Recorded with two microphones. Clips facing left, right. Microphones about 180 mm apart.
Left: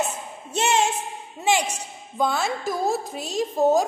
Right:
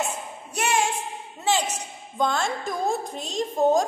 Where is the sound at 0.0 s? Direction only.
25° left (ahead or behind).